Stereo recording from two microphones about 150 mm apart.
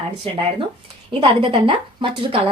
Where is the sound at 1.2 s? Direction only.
35° right (ahead or behind).